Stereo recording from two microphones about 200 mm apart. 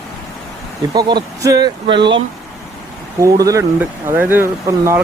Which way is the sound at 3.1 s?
15° right (ahead or behind).